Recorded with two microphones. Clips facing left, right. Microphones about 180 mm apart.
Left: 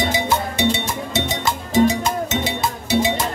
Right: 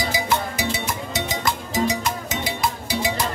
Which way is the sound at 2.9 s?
50° left (ahead or behind).